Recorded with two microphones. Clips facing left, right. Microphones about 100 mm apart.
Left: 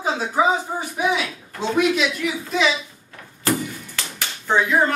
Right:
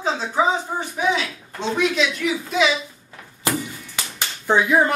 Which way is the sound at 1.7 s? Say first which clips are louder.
Left 2 dB; 5° left (ahead or behind).